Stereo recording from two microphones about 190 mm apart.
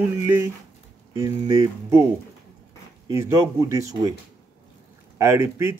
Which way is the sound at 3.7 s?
15° right (ahead or behind).